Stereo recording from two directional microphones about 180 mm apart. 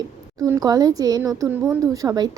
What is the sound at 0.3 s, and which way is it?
A woman's voice, 20° right (ahead or behind).